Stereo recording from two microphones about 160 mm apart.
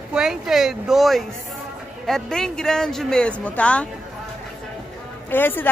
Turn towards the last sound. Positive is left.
turn(degrees=10)  # may be behind; listen again after turning